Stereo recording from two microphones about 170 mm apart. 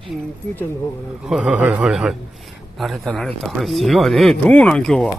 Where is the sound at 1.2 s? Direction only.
5° right (ahead or behind).